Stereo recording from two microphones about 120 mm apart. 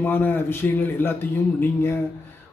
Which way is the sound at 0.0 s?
15° left (ahead or behind).